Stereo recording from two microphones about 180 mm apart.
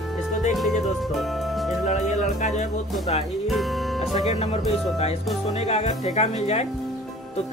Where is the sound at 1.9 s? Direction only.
40° left (ahead or behind).